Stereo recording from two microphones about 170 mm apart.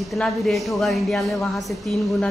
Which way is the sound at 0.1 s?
Centre (ahead or behind).